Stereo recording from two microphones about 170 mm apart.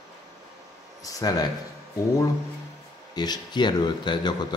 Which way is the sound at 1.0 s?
20° left (ahead or behind).